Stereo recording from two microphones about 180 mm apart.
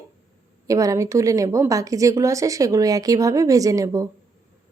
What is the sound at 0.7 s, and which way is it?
A woman's voice, 20° right (ahead or behind).